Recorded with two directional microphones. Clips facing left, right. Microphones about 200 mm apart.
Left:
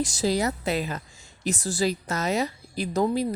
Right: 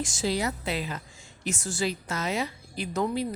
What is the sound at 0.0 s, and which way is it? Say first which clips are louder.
A woman's voice: left 4 dB; 35° left (ahead or behind).